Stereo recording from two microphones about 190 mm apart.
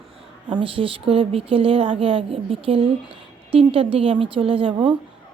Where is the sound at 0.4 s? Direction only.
25° right (ahead or behind).